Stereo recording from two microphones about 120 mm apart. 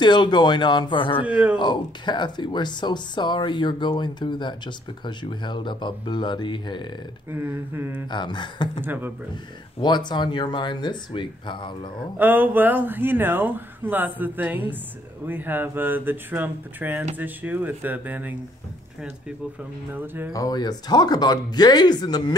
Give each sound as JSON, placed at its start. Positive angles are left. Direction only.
{"t": 0.0, "sound": "speech", "side_deg": 40}
{"t": 1.2, "sound": "speech", "side_deg": -10}
{"t": 1.6, "sound": "speech", "side_deg": 40}
{"t": 7.2, "sound": "speech", "side_deg": -20}
{"t": 8.1, "sound": "speech", "side_deg": 40}
{"t": 8.8, "sound": "speech", "side_deg": -15}
{"t": 9.8, "sound": "speech", "side_deg": 40}
{"t": 12.2, "sound": "speech", "side_deg": -15}
{"t": 19.9, "sound": "speech", "side_deg": -15}
{"t": 20.3, "sound": "speech", "side_deg": 30}